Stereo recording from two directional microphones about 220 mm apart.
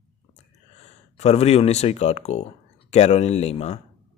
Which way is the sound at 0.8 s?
30° left (ahead or behind).